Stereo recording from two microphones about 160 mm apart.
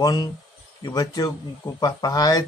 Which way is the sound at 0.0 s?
25° left (ahead or behind).